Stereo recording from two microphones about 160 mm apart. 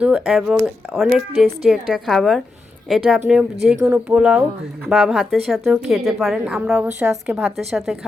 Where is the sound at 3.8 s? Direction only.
15° right (ahead or behind).